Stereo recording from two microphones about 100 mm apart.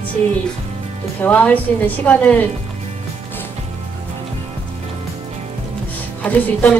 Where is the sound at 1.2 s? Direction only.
15° left (ahead or behind).